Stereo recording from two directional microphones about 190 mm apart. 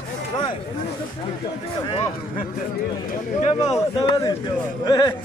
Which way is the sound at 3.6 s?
20° left (ahead or behind).